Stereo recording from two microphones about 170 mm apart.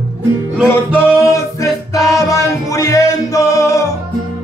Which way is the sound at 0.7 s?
15° left (ahead or behind).